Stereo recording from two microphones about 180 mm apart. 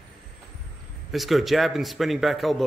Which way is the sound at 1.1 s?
Centre (ahead or behind).